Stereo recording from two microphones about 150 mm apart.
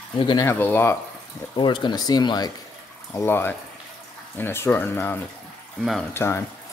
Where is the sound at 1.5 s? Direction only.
30° left (ahead or behind).